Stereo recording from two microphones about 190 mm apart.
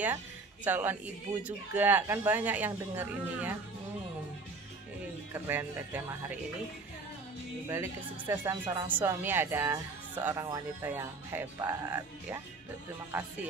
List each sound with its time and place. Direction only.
0.7 s speech: 10° right (ahead or behind)
5.3 s speech: 10° right (ahead or behind)
7.6 s speech: 15° right (ahead or behind)